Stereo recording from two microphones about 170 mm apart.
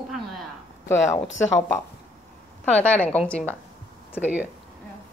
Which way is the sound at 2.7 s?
10° left (ahead or behind).